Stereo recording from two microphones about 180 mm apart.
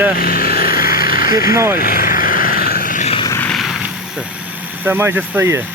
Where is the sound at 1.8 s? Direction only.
55° left (ahead or behind).